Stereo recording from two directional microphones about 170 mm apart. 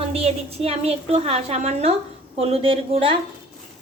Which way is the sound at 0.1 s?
35° right (ahead or behind).